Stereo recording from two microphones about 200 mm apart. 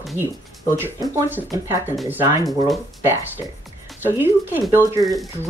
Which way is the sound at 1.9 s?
5° right (ahead or behind).